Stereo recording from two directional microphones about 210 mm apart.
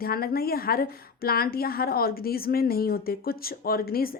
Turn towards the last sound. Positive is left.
turn(degrees=45)  # may be behind; listen again after turning